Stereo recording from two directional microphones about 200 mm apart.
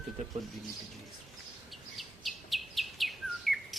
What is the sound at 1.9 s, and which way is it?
Bird, centre (ahead or behind).